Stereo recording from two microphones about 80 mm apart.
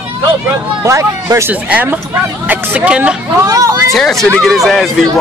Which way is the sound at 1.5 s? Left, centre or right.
Centre.